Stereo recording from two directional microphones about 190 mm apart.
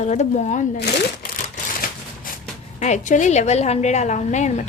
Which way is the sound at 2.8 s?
40° left (ahead or behind).